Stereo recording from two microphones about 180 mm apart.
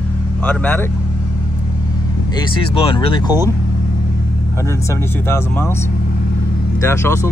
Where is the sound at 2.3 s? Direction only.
25° left (ahead or behind).